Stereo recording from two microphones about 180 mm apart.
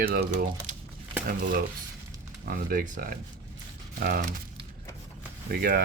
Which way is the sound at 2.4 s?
55° right (ahead or behind).